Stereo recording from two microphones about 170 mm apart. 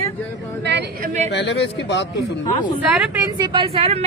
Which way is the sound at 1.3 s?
90° left.